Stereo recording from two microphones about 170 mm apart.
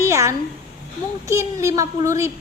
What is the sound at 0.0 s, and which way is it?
A woman's voice, 15° right (ahead or behind).